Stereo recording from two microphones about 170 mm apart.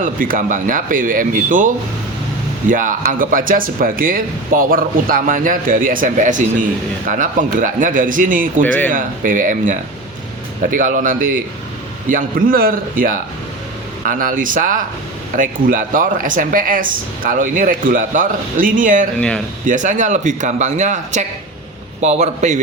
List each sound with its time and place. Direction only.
0.0 s speech: 55° right (ahead or behind)
8.6 s speech: 10° left (ahead or behind)
8.9 s speech: 50° right (ahead or behind)